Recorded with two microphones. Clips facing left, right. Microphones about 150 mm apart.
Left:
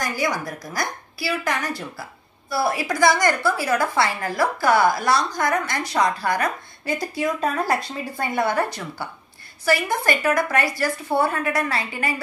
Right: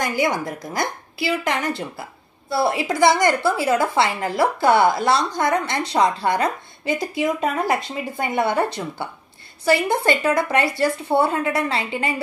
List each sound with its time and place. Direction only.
0.0 s a woman's voice: 20° right (ahead or behind)